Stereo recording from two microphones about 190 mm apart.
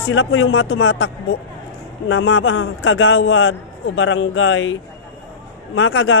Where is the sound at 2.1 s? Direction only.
90° left.